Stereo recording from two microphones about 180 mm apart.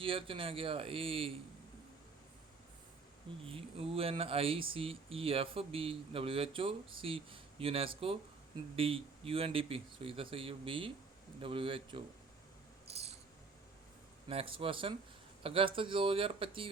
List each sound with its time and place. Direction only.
0.0 s speech: 30° right (ahead or behind)
3.4 s speech: 30° right (ahead or behind)
12.9 s a sound: 35° right (ahead or behind)
14.3 s speech: 30° right (ahead or behind)